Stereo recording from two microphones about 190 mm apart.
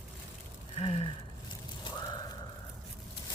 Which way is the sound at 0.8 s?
30° left (ahead or behind).